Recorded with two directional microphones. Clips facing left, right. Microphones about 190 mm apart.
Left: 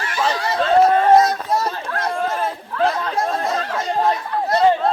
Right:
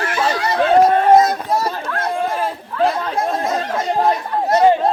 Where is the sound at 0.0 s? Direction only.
60° right (ahead or behind).